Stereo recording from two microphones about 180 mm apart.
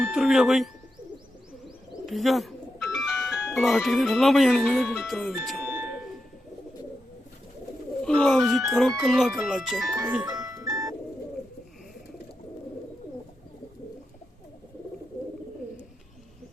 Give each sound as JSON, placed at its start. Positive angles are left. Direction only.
{"t": 0.0, "sound": "speech", "side_deg": 0}
{"t": 2.0, "sound": "speech", "side_deg": 0}
{"t": 8.0, "sound": "speech", "side_deg": 5}
{"t": 10.2, "sound": "music", "side_deg": -20}